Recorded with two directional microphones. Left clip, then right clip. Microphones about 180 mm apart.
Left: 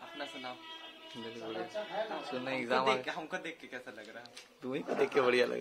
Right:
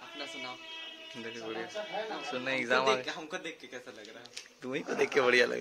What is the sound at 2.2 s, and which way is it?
Speech, 5° right (ahead or behind).